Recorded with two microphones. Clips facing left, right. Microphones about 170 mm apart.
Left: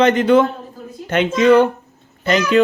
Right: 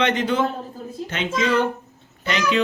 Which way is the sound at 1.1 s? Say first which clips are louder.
Left 10 dB; 60° left (ahead or behind).